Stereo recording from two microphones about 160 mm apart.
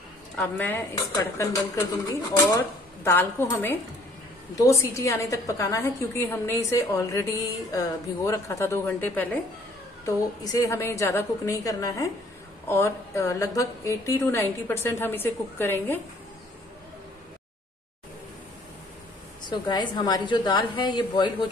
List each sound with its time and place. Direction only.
0.4 s a woman's voice: 10° left (ahead or behind)
3.0 s a woman's voice: 15° left (ahead or behind)
19.5 s a woman's voice: 25° left (ahead or behind)